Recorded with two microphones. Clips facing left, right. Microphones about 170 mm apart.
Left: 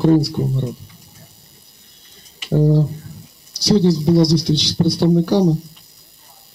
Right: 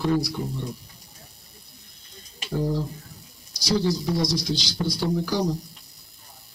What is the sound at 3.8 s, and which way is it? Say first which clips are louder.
Speech: left 9 dB; 30° left (ahead or behind).